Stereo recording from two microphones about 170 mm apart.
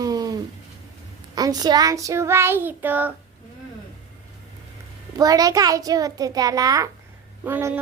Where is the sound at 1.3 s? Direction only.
25° right (ahead or behind).